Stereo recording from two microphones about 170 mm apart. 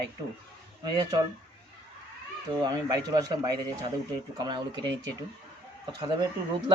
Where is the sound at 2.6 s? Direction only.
20° right (ahead or behind).